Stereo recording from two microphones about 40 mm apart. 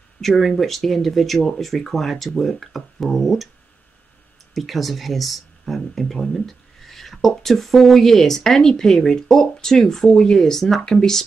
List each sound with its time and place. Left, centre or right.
0.2 s speech: centre
4.6 s speech: centre